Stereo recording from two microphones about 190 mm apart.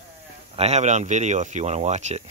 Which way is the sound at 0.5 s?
35° right (ahead or behind).